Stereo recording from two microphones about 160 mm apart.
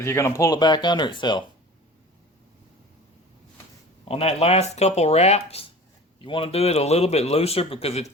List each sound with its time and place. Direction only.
0.0 s speech: 15° left (ahead or behind)
4.1 s speech: 40° left (ahead or behind)